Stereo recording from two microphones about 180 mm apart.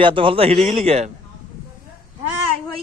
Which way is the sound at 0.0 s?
30° right (ahead or behind).